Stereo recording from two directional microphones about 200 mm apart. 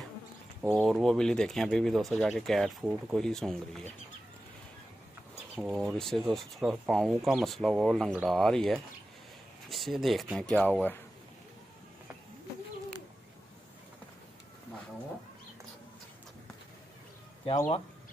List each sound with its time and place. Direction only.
0.6 s speech: centre (ahead or behind)
5.6 s speech: 5° right (ahead or behind)
17.6 s speech: 25° left (ahead or behind)